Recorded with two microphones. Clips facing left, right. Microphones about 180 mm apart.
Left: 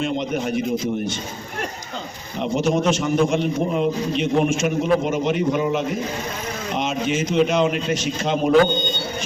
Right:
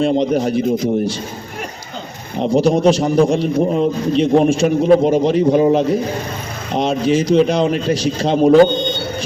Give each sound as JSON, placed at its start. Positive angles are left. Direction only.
{"t": 0.0, "sound": "a man's voice", "side_deg": -35}
{"t": 2.4, "sound": "a man's voice", "side_deg": -35}